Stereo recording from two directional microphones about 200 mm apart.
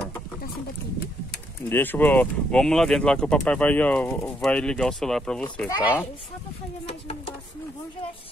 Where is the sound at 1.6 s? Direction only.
10° left (ahead or behind).